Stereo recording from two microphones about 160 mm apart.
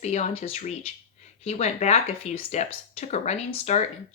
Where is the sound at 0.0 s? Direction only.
45° left (ahead or behind).